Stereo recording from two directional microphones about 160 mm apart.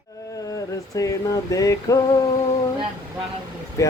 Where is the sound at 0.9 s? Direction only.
20° left (ahead or behind).